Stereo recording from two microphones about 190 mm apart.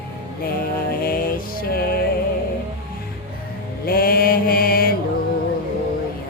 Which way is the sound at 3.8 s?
50° left (ahead or behind).